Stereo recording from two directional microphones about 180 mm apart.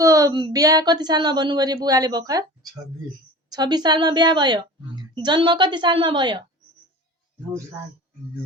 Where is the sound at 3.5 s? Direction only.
25° right (ahead or behind).